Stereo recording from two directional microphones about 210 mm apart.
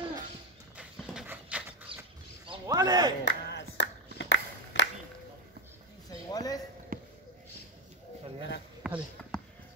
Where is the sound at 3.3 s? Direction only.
55° left (ahead or behind).